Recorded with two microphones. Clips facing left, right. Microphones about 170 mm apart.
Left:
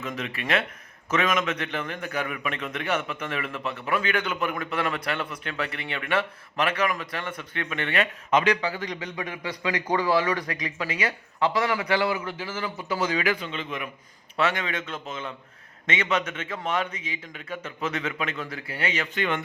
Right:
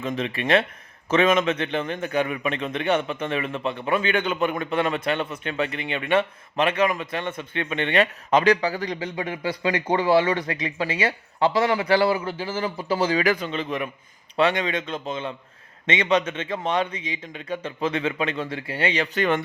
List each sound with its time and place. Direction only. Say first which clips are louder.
0.0 s a man's voice: right 6 dB; 30° right (ahead or behind)
14.3 s a man's voice: right 5 dB; 25° right (ahead or behind)